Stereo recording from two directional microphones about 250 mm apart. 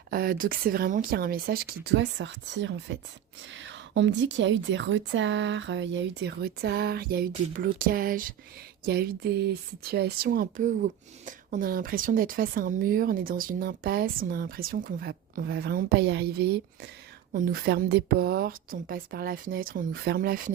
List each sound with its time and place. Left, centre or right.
0.1 s a woman's voice: right